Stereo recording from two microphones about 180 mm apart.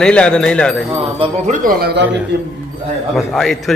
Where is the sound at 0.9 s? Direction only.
30° right (ahead or behind).